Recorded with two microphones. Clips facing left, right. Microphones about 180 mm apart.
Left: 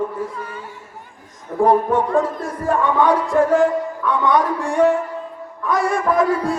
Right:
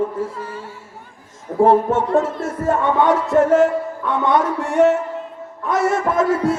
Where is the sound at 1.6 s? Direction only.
25° right (ahead or behind).